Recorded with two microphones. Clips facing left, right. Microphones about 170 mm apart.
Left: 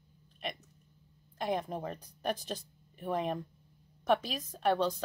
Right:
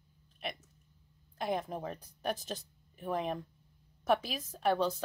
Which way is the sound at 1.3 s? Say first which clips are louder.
Left 1 dB; centre (ahead or behind).